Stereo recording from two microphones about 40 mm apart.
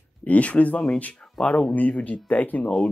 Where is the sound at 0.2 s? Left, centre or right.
Left.